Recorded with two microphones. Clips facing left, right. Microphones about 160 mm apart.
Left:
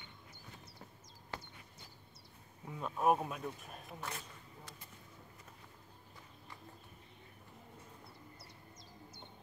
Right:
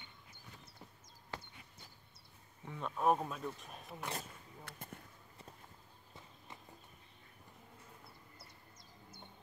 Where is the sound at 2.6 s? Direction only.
5° left (ahead or behind).